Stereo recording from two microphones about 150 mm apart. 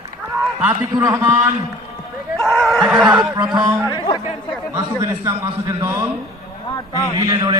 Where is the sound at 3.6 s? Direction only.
15° right (ahead or behind).